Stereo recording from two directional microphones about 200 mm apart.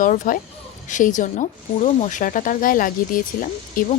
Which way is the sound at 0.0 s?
40° left (ahead or behind).